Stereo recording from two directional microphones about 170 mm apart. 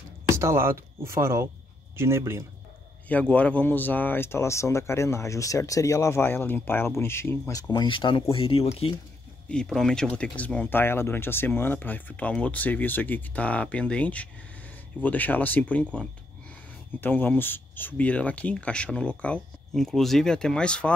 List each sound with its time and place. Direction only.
0.4 s speech: 15° right (ahead or behind)
3.1 s speech: 10° left (ahead or behind); by 8.9 s 35° left (ahead or behind)
9.5 s speech: 5° left (ahead or behind)